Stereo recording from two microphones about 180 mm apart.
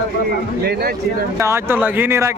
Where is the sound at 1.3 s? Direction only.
15° right (ahead or behind).